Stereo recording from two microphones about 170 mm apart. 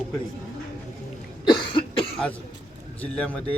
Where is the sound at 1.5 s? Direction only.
30° left (ahead or behind).